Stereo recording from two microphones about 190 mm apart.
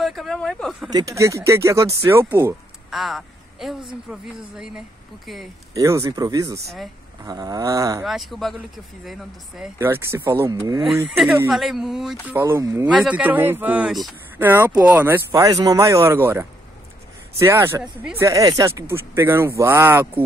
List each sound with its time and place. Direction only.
0.0 s speech: centre (ahead or behind)
0.9 s speech: 15° right (ahead or behind)
2.9 s a woman's voice: centre (ahead or behind)
5.8 s speech: 15° right (ahead or behind)
7.2 s a sound: 20° right (ahead or behind)
8.0 s speech: centre (ahead or behind)
9.8 s speech: 10° right (ahead or behind)
11.1 s speech: centre (ahead or behind)
12.4 s speech: 15° right (ahead or behind)